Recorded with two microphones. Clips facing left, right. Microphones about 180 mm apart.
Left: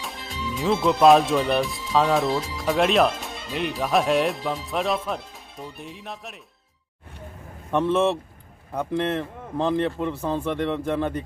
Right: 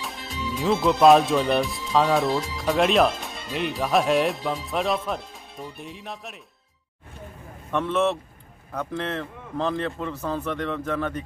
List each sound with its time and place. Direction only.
0.0 s speech: centre (ahead or behind)
7.9 s speech: 10° left (ahead or behind)